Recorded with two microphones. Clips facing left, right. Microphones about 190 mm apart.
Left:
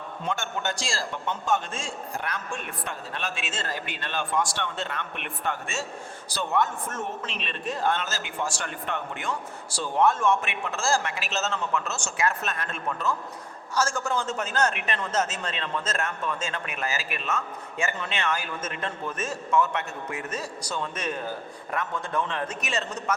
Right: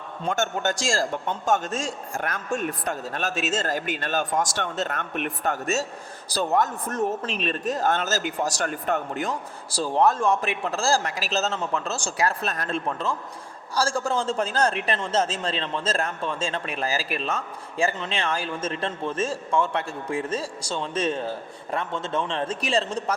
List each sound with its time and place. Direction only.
0.3 s a man's voice: 45° right (ahead or behind)